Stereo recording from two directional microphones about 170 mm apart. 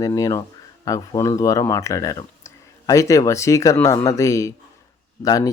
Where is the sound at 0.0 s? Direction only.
20° left (ahead or behind).